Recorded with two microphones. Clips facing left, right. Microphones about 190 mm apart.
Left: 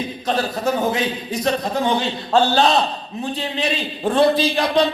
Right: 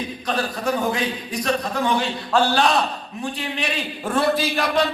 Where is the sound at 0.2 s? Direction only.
25° left (ahead or behind).